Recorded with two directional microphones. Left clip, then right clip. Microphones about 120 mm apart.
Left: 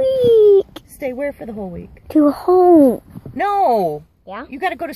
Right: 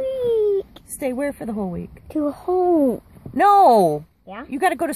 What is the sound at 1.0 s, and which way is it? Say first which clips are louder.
Speech: left 1 dB; 15° right (ahead or behind).